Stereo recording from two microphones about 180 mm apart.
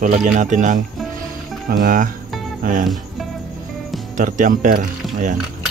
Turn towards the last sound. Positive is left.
turn(degrees=-45)  # may be behind; listen again after turning